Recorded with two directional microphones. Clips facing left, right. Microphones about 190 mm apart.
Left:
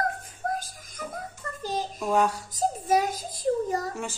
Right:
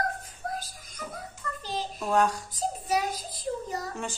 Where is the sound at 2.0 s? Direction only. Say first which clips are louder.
Even; 10° left (ahead or behind).